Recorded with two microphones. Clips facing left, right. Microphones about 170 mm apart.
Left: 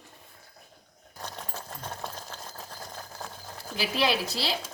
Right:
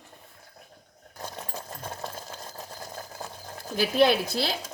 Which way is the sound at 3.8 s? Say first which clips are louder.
Right 6 dB; 50° right (ahead or behind).